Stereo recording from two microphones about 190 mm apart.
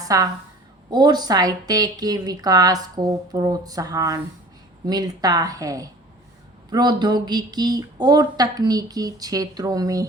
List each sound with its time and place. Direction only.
0.1 s a woman's voice: 20° right (ahead or behind)